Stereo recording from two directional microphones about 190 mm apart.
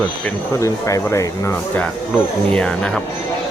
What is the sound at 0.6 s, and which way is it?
Speech, 15° left (ahead or behind).